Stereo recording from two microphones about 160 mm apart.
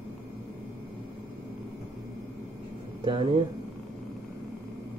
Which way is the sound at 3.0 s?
30° right (ahead or behind).